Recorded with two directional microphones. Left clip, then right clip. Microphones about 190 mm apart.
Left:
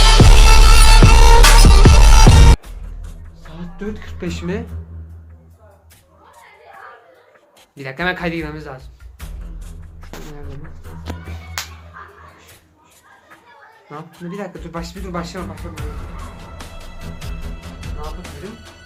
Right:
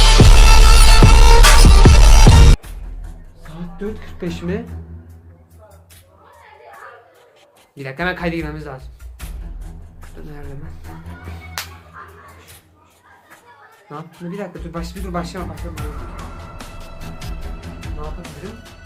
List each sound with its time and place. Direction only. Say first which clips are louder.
0.3 s music: left 1 dB; centre (ahead or behind)
7.8 s speech: left 1 dB; centre (ahead or behind)
12.0 s dog: even; 35° right (ahead or behind)
13.9 s speech: even; centre (ahead or behind)
16.6 s music: left 1 dB; centre (ahead or behind)
17.7 s speech: left 1 dB; centre (ahead or behind)